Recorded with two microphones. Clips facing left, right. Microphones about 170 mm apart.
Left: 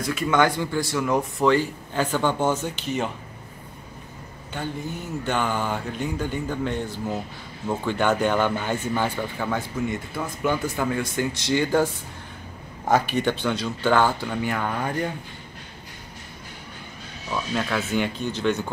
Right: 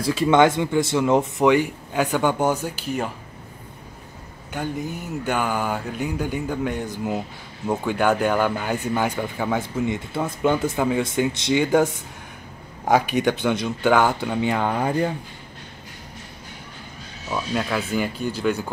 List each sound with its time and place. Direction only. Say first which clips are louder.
0.0 s speech: right 5 dB; 30° right (ahead or behind); by 3.1 s 10° right (ahead or behind)
5.2 s speech: right 2 dB; 10° right (ahead or behind); by 15.0 s 30° right (ahead or behind)
17.3 s speech: right 2 dB; 10° right (ahead or behind)